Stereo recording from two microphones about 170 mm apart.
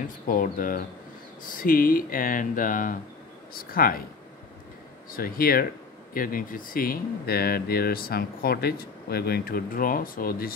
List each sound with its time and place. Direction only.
0.3 s speech: 55° left (ahead or behind)
5.1 s speech: 60° left (ahead or behind)